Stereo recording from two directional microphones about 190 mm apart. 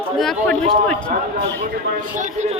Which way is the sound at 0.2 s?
5° left (ahead or behind).